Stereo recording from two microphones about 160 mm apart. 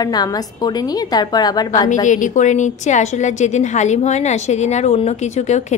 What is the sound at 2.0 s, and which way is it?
A woman's voice, 50° left (ahead or behind).